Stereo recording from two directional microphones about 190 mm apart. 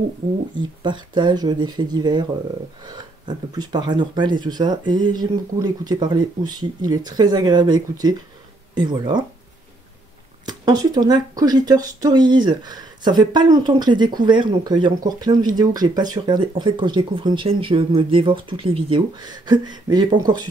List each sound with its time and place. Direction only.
0.6 s speech: 25° right (ahead or behind)
10.4 s speech: 20° right (ahead or behind)